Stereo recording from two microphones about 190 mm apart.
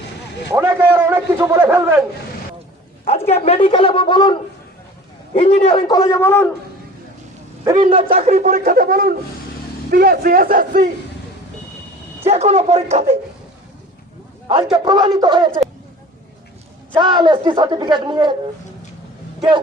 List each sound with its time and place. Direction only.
0.5 s a man's voice: 10° right (ahead or behind)
3.2 s a woman's voice: 35° left (ahead or behind)
5.3 s a man's voice: 35° left (ahead or behind); by 6.5 s 10° left (ahead or behind)
7.6 s a man's voice: 20° right (ahead or behind); by 10.9 s 45° right (ahead or behind)
12.2 s speech: 35° right (ahead or behind)
14.4 s a woman's voice: 25° right (ahead or behind)
16.9 s a woman's voice: 25° right (ahead or behind)